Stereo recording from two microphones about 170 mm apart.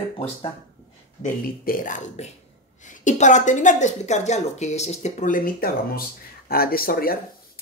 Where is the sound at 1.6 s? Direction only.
55° left (ahead or behind).